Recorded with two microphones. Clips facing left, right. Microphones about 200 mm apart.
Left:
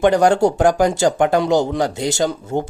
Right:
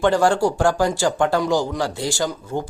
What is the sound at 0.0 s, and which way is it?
Speech, 20° left (ahead or behind).